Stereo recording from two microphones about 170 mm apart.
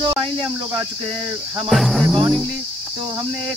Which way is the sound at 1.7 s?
Centre (ahead or behind).